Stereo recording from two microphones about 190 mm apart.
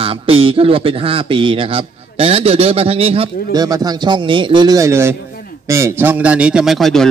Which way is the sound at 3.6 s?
20° right (ahead or behind).